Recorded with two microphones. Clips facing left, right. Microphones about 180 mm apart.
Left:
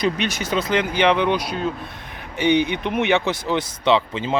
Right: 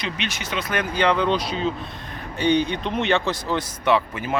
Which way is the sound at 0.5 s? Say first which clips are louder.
Left 4 dB; 25° left (ahead or behind).